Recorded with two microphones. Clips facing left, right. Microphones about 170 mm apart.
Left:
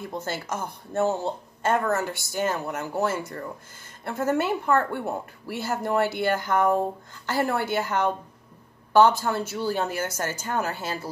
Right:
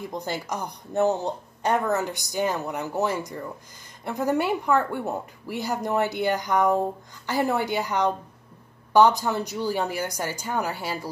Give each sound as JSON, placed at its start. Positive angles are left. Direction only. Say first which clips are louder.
{"t": 0.0, "sound": "speech", "louder": "right 1 dB", "side_deg": -15}